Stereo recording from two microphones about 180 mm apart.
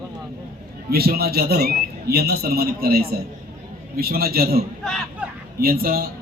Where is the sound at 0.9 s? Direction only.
60° right (ahead or behind).